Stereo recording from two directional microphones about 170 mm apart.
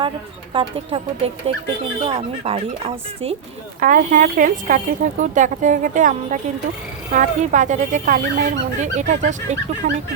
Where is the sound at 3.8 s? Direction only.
50° right (ahead or behind).